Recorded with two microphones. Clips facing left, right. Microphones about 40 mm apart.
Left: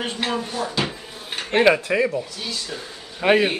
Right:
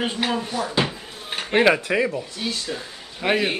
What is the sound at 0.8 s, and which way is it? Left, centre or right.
Drawer open or close, centre.